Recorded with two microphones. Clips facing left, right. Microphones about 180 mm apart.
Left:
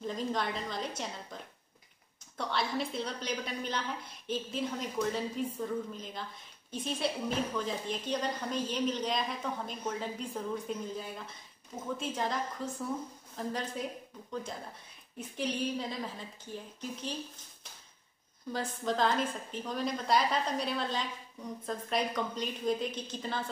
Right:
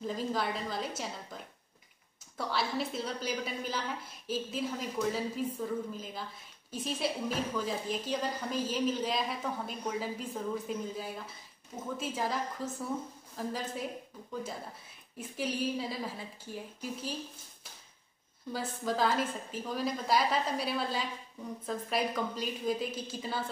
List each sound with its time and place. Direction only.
0.0 s a woman's voice: 5° right (ahead or behind)
18.5 s a woman's voice: 5° right (ahead or behind)